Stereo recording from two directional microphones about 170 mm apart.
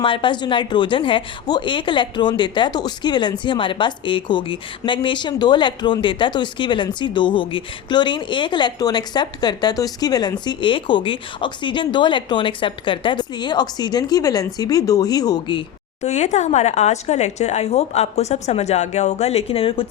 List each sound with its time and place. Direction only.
0.0 s speech: 30° left (ahead or behind)
16.0 s speech: 40° left (ahead or behind)